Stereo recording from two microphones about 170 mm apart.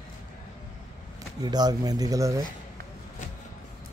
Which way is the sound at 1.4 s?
25° right (ahead or behind).